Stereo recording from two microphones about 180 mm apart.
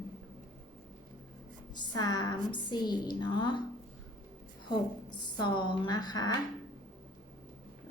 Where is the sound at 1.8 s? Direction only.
20° left (ahead or behind).